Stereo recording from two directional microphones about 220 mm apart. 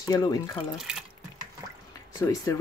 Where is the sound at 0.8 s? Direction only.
Centre (ahead or behind).